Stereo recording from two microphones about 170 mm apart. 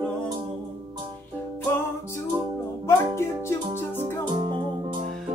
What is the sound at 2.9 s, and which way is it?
Music, 15° left (ahead or behind).